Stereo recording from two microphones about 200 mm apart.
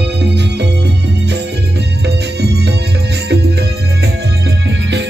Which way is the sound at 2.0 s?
55° right (ahead or behind).